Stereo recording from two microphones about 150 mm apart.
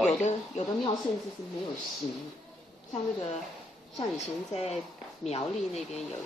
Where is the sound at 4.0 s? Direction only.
45° left (ahead or behind).